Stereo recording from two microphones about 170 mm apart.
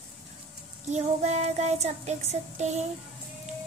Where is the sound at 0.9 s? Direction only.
40° right (ahead or behind).